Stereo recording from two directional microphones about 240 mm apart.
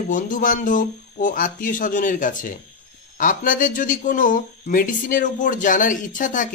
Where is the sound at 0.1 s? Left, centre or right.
Left.